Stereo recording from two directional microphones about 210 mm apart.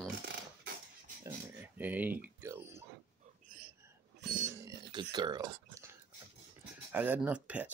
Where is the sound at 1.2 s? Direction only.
10° right (ahead or behind).